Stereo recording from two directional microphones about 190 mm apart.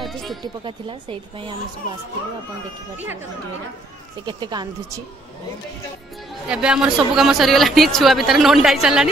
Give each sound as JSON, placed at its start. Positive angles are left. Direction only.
{"t": 0.0, "sound": "music", "side_deg": 0}
{"t": 0.4, "sound": "speech", "side_deg": -25}
{"t": 4.3, "sound": "speech", "side_deg": -25}
{"t": 6.4, "sound": "speech", "side_deg": -5}